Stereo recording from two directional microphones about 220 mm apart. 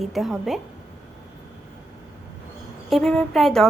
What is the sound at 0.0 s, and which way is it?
Speech, centre (ahead or behind).